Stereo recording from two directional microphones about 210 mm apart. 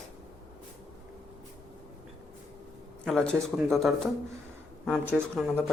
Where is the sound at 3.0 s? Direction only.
5° left (ahead or behind).